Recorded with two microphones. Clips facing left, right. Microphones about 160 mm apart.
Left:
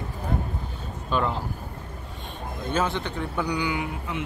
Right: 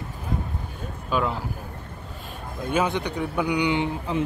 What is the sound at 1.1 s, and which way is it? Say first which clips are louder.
Speech: right 1 dB; 10° right (ahead or behind).